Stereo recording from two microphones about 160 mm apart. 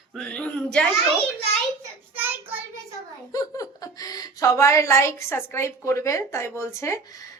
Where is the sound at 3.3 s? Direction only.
20° left (ahead or behind).